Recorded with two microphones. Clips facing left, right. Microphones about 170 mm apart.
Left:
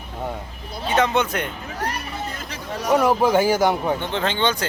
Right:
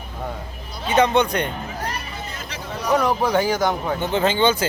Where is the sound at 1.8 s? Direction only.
60° left (ahead or behind).